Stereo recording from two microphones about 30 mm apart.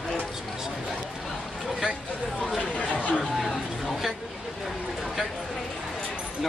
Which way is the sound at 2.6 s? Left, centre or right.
Left.